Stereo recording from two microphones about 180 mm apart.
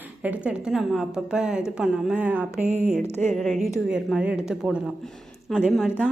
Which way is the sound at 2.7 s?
40° right (ahead or behind).